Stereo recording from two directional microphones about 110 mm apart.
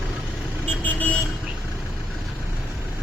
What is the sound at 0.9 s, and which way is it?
Vehicle, 15° left (ahead or behind).